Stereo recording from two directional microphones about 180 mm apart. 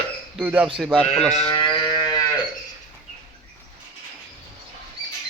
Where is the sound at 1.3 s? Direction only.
25° left (ahead or behind).